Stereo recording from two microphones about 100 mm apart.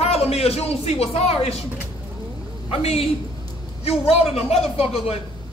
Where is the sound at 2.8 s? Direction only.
90° left.